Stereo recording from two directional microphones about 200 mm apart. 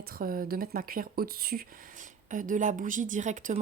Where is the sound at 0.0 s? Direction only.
45° right (ahead or behind).